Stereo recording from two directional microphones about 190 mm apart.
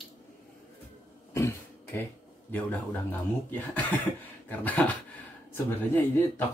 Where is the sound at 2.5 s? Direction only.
10° left (ahead or behind).